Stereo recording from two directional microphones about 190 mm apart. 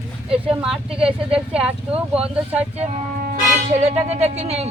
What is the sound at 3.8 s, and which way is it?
Speech, 35° right (ahead or behind).